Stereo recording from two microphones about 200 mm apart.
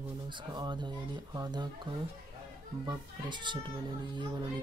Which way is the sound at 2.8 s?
25° right (ahead or behind).